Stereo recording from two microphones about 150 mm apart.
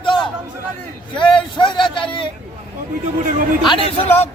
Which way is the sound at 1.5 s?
30° left (ahead or behind).